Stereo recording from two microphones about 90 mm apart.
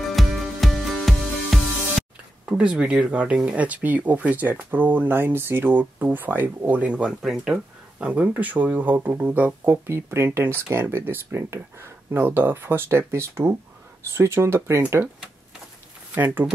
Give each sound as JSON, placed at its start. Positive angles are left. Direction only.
{"t": 0.1, "sound": "music", "side_deg": 0}
{"t": 2.4, "sound": "speech", "side_deg": -10}
{"t": 8.1, "sound": "speech", "side_deg": -15}